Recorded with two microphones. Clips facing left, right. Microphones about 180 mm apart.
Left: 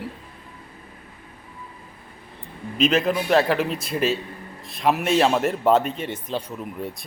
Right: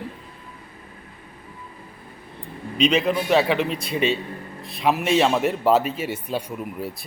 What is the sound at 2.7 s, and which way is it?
A man's voice, centre (ahead or behind).